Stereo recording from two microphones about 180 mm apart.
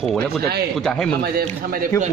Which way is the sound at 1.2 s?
60° right (ahead or behind).